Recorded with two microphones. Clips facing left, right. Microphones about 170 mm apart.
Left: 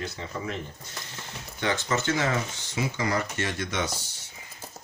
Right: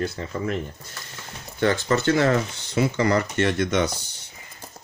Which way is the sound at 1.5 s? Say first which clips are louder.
Right 6 dB; 50° right (ahead or behind).